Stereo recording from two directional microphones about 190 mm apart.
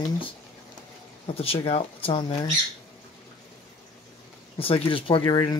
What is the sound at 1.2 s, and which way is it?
Speech, 30° left (ahead or behind).